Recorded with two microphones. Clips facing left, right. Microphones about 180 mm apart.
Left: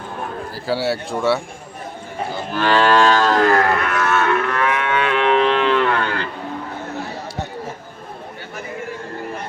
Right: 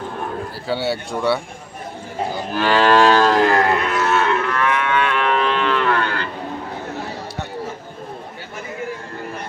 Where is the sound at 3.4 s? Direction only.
15° right (ahead or behind).